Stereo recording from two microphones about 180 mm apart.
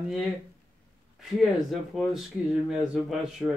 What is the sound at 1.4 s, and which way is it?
Speech, centre (ahead or behind).